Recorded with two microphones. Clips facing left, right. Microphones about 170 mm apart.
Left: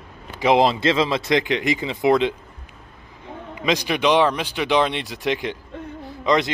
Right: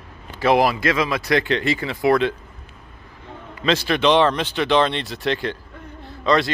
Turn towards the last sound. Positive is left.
turn(degrees=15)  # may be behind; listen again after turning